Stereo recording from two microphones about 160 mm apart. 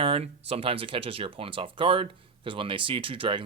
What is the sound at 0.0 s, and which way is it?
Speech, 40° right (ahead or behind).